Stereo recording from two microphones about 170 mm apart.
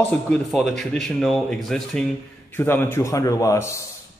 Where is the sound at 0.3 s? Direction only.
Centre (ahead or behind).